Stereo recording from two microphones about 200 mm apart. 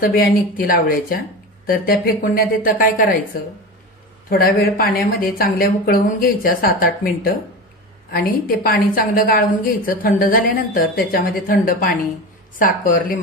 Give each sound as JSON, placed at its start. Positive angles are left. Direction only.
{"t": 0.0, "sound": "a woman's voice", "side_deg": 50}
{"t": 4.3, "sound": "a woman's voice", "side_deg": 50}